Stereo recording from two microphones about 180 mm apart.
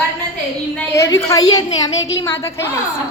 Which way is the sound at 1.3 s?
20° left (ahead or behind).